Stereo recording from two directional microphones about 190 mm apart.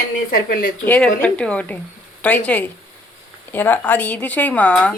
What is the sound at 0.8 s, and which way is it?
Speech, 10° left (ahead or behind).